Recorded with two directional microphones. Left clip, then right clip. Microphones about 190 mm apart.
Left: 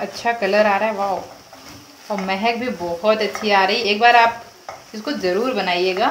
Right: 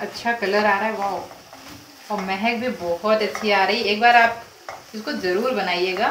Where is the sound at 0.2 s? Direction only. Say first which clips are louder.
Left 4 dB; 50° left (ahead or behind).